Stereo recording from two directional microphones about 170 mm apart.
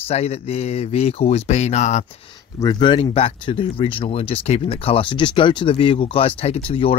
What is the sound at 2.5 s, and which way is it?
Speech, 25° left (ahead or behind).